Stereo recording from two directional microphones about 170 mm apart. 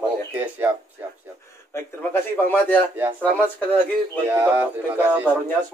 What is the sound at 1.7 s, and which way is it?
A man's voice, 10° left (ahead or behind).